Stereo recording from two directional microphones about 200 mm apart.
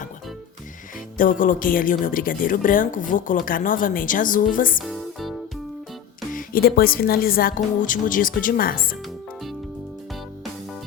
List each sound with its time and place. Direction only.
1.1 s speech: 45° left (ahead or behind)
6.3 s speech: 50° left (ahead or behind)